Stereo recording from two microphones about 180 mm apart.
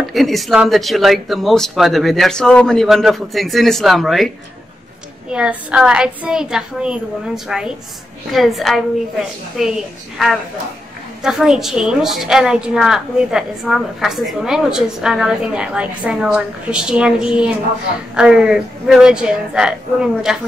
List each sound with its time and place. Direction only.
0.1 s a woman's voice: centre (ahead or behind)
5.3 s a woman's voice: 5° right (ahead or behind)